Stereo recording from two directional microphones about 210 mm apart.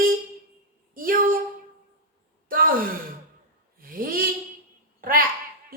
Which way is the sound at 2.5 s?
40° right (ahead or behind).